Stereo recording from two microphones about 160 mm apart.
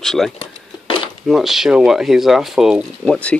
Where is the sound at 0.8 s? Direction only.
30° left (ahead or behind).